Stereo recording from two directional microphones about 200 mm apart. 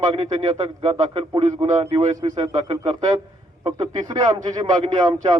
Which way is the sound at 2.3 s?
25° right (ahead or behind).